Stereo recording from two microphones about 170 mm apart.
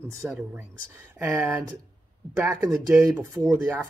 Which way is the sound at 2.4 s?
15° right (ahead or behind).